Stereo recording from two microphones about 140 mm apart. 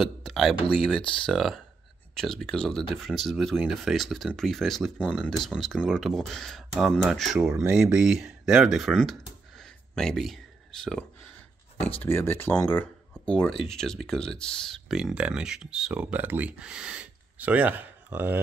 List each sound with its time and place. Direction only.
0.0 s speech: centre (ahead or behind)
12.0 s speech: 15° left (ahead or behind); by 18.4 s 15° right (ahead or behind)